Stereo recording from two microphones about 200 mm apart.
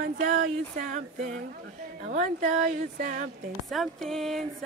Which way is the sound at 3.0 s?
45° right (ahead or behind).